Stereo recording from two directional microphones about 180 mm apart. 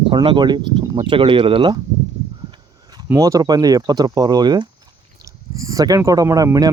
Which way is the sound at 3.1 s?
15° right (ahead or behind).